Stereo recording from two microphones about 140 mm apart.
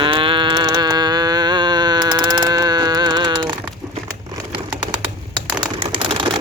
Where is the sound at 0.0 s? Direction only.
40° right (ahead or behind).